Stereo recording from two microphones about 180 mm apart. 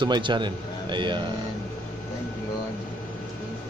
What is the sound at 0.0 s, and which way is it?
Speech, 25° right (ahead or behind).